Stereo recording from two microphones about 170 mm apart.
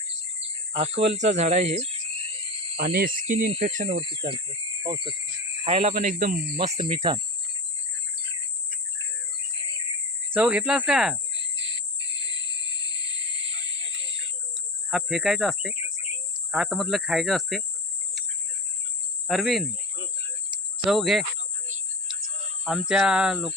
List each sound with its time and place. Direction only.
0.3 s cricket: 35° right (ahead or behind)
2.7 s speech: 70° right (ahead or behind)
3.2 s speech: 40° right (ahead or behind)
3.7 s speech: 50° right (ahead or behind)
3.9 s speech: 30° right (ahead or behind)
5.6 s speech: 35° right (ahead or behind)
5.9 s speech: 55° right (ahead or behind)
6.6 s cricket: 30° right (ahead or behind)
10.3 s speech: 5° right (ahead or behind)
13.5 s a sound: 90° right
14.8 s speech: centre (ahead or behind)
19.3 s speech: centre (ahead or behind)
20.5 s cricket: centre (ahead or behind)
22.6 s speech: 5° right (ahead or behind)